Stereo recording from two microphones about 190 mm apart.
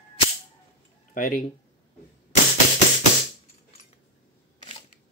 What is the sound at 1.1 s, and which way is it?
Speech, 45° left (ahead or behind).